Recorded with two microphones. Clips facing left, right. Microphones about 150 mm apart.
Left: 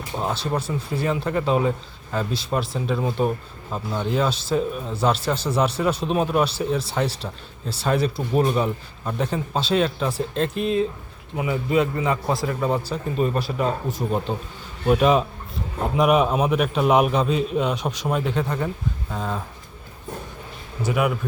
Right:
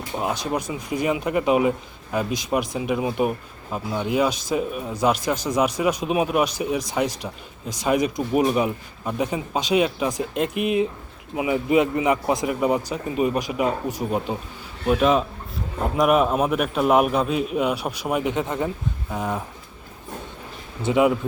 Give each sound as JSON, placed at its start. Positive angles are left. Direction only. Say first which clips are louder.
{"t": 0.2, "sound": "speech", "louder": "even", "side_deg": -10}
{"t": 14.8, "sound": "a man's voice", "louder": "left 1 dB", "side_deg": 0}
{"t": 20.8, "sound": "speech", "louder": "right 4 dB", "side_deg": -25}